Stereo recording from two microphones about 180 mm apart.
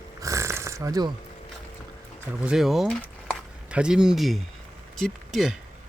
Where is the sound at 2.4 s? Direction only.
5° right (ahead or behind).